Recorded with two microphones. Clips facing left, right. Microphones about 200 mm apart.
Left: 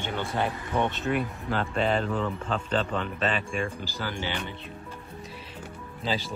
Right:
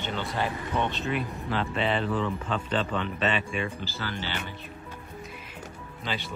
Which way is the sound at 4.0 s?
15° left (ahead or behind).